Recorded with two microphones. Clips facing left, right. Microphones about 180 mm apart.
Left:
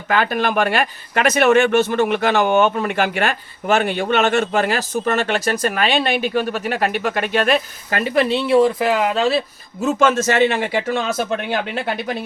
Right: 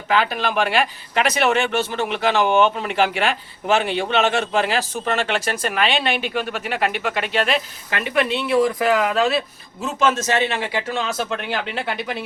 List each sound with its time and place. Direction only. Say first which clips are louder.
0.1 s speech: left 2 dB; 50° left (ahead or behind); by 9.4 s 30° left (ahead or behind)
9.8 s speech: left 4 dB; 55° left (ahead or behind)